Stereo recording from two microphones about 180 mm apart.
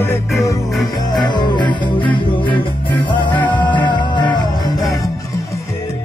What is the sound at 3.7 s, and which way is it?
Music, 25° left (ahead or behind).